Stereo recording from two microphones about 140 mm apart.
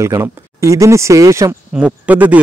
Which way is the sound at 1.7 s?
10° right (ahead or behind).